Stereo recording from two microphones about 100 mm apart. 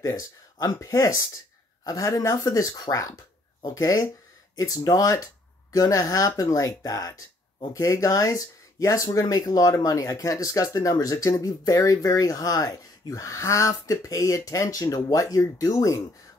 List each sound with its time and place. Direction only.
0.0 s speech: 35° left (ahead or behind)